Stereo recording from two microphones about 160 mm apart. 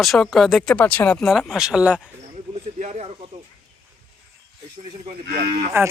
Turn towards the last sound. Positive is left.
turn(degrees=-15)  # may be behind; listen again after turning